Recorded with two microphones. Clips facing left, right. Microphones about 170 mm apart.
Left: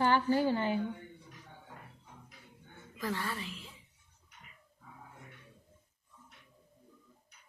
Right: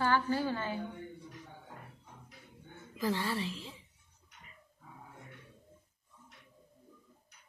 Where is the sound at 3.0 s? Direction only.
30° right (ahead or behind).